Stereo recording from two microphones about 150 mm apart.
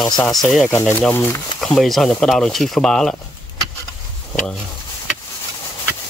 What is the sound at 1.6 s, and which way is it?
Speech, centre (ahead or behind).